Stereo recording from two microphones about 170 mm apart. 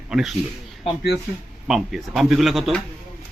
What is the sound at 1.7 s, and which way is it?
Speech, centre (ahead or behind).